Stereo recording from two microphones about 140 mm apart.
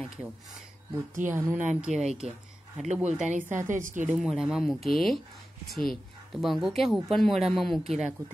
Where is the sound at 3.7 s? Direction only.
65° right (ahead or behind).